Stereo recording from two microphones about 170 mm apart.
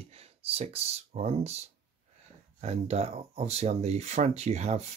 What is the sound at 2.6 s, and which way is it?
Speech, 40° right (ahead or behind).